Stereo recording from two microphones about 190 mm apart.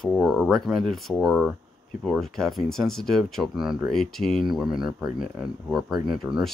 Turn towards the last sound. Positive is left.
turn(degrees=0)  # may be behind; listen again after turning